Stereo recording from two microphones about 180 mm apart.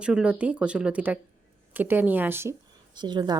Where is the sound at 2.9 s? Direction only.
25° right (ahead or behind).